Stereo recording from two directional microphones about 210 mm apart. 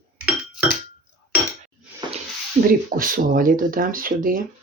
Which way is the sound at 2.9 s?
40° right (ahead or behind).